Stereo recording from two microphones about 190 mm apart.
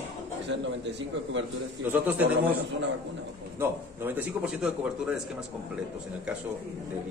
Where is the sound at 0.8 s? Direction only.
70° right (ahead or behind).